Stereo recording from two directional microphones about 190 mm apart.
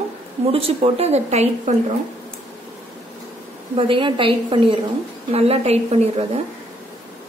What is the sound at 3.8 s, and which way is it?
A woman's voice, 25° right (ahead or behind).